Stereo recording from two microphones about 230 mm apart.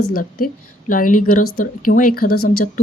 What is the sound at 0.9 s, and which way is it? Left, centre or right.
Speech, left.